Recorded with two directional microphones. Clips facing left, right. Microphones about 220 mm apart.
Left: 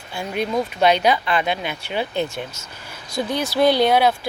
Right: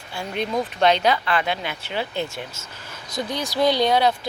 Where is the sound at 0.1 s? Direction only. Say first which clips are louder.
Left 2 dB; 15° left (ahead or behind).